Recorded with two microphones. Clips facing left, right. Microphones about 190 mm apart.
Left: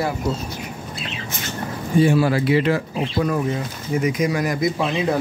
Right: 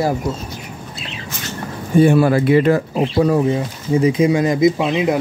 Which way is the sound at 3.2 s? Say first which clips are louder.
Right 6 dB; 30° right (ahead or behind).